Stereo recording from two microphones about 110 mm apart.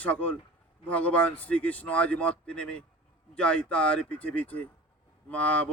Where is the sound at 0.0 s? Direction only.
15° left (ahead or behind).